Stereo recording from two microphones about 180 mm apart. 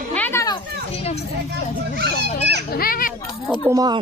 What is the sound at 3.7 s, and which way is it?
Speech, 20° right (ahead or behind).